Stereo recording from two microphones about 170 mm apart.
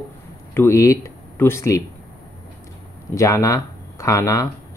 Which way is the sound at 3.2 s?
20° left (ahead or behind).